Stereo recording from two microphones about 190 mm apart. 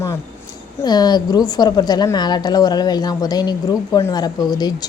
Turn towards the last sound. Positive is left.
turn(degrees=20)  # may be behind; listen again after turning